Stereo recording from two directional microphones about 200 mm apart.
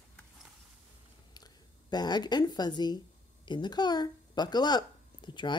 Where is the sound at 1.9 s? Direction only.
20° left (ahead or behind).